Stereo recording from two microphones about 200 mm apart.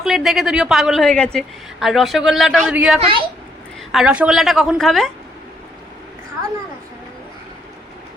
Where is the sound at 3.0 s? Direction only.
25° right (ahead or behind).